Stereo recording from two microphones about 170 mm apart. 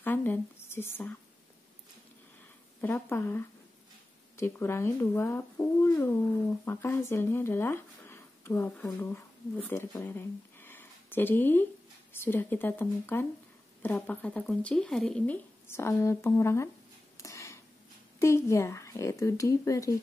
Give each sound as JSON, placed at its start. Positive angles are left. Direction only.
{"t": 0.0, "sound": "speech", "side_deg": 10}
{"t": 2.8, "sound": "speech", "side_deg": 10}
{"t": 17.2, "sound": "a sound", "side_deg": 20}
{"t": 18.2, "sound": "speech", "side_deg": 15}